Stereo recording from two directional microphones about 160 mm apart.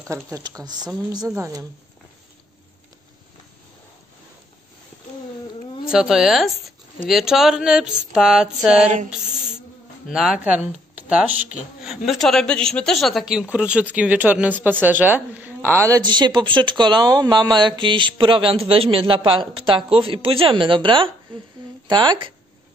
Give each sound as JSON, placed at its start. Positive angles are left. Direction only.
{"t": 0.0, "sound": "speech", "side_deg": -20}
{"t": 5.9, "sound": "a man's voice", "side_deg": -5}
{"t": 9.1, "sound": "a sound", "side_deg": -5}
{"t": 10.0, "sound": "a man's voice", "side_deg": -5}
{"t": 16.0, "sound": "speech", "side_deg": -30}